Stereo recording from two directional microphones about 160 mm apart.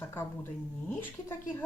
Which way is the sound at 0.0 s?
15° left (ahead or behind).